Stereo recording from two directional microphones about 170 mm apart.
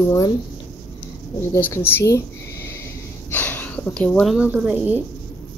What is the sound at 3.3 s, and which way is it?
Speech, 10° left (ahead or behind).